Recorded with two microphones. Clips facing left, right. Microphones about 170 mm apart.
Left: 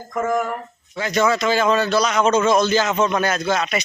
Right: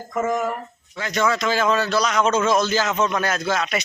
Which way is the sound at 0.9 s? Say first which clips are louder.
Left 3 dB; 10° left (ahead or behind).